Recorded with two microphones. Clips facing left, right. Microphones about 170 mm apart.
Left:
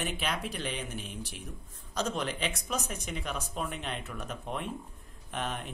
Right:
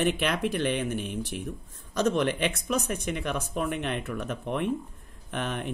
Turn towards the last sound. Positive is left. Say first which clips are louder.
# right 4 dB
turn(degrees=-60)  # may be behind; listen again after turning